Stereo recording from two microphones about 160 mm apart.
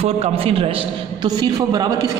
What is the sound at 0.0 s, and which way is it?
A man's voice, 40° right (ahead or behind).